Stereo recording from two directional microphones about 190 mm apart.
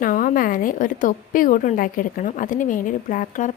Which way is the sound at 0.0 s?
45° left (ahead or behind).